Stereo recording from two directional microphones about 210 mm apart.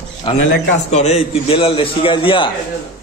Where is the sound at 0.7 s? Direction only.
35° left (ahead or behind).